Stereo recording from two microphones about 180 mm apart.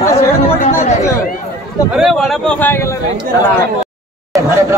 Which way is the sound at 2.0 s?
Centre (ahead or behind).